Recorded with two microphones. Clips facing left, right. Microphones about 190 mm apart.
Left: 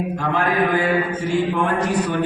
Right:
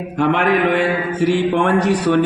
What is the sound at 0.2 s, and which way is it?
A man's voice, 75° right (ahead or behind).